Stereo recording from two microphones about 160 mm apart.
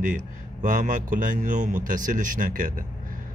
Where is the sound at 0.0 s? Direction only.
55° right (ahead or behind).